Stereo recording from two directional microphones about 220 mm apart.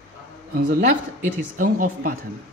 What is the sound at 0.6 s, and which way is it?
Speech, 35° right (ahead or behind).